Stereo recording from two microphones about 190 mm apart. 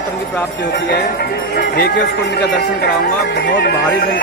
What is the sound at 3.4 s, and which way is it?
Speech, 60° left (ahead or behind).